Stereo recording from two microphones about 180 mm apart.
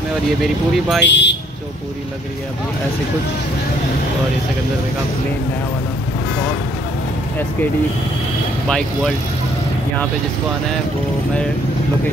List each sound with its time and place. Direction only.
0.4 s speech: centre (ahead or behind)
1.0 s speech: 75° left (ahead or behind)
8.6 s speech: 5° left (ahead or behind)